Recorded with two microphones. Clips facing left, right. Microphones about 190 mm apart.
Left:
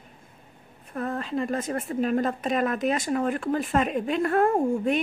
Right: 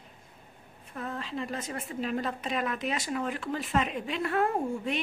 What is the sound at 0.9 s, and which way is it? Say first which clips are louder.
A woman's voice: left 7 dB; 50° left (ahead or behind).